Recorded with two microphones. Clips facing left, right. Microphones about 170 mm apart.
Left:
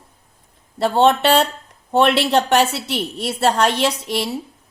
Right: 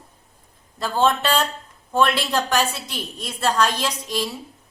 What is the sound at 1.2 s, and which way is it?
Speech, 65° left (ahead or behind).